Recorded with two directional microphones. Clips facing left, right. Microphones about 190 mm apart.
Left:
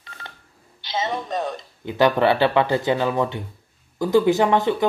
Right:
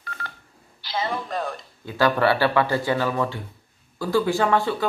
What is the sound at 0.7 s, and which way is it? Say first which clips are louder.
Speech: left 2 dB; 20° left (ahead or behind).